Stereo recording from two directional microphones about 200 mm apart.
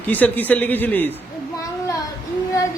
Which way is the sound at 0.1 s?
10° left (ahead or behind).